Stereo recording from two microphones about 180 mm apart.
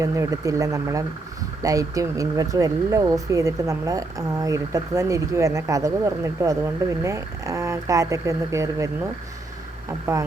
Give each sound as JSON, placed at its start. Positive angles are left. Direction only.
{"t": 0.0, "sound": "speech", "side_deg": -20}